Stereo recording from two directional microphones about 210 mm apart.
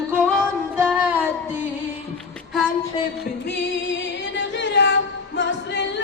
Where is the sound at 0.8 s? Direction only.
10° right (ahead or behind).